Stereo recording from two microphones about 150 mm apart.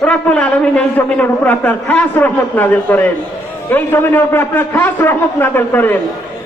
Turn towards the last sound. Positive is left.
turn(degrees=15)  # may be behind; listen again after turning